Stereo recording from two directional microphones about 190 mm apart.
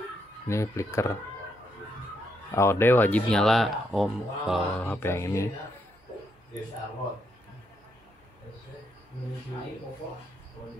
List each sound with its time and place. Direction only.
0.5 s speech: 15° left (ahead or behind)
2.5 s speech: 15° left (ahead or behind)